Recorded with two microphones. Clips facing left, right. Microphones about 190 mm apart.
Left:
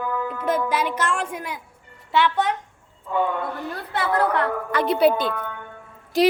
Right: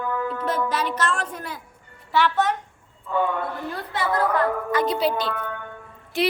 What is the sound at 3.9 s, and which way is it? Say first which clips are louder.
A woman's voice: left 1 dB; 65° left (ahead or behind).